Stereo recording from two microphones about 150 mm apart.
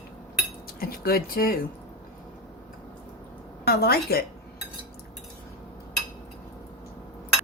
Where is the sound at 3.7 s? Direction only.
90° left.